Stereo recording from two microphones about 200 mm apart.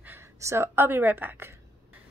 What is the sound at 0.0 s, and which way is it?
A woman's voice, 10° right (ahead or behind).